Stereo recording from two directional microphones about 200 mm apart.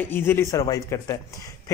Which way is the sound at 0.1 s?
10° left (ahead or behind).